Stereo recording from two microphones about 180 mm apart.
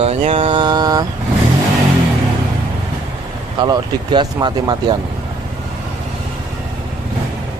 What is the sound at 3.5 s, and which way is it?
Speech, 25° right (ahead or behind).